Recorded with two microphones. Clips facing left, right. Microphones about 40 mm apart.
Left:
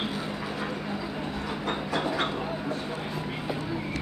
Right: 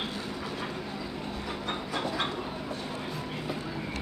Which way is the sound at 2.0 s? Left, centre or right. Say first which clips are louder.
Left 3 dB; left.